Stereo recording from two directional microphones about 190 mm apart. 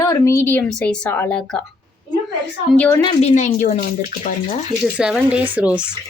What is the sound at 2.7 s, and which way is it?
Speech, 10° left (ahead or behind).